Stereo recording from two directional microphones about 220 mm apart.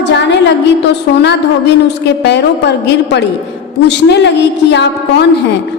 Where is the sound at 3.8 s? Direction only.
50° left (ahead or behind).